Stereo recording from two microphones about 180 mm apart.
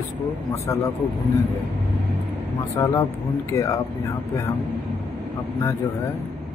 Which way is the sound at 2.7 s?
15° left (ahead or behind).